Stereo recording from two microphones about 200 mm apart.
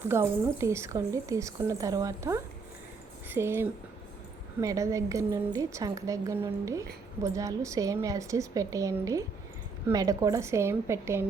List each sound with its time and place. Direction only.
0.0 s a woman's voice: 15° right (ahead or behind)